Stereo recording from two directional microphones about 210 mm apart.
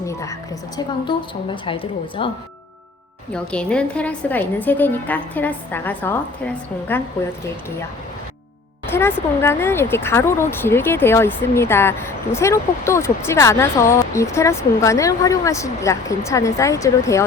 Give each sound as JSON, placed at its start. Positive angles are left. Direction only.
{"t": 0.0, "sound": "a sound", "side_deg": 15}
{"t": 0.8, "sound": "a woman's voice", "side_deg": 20}
{"t": 3.3, "sound": "speech", "side_deg": 5}
{"t": 8.9, "sound": "speech", "side_deg": 10}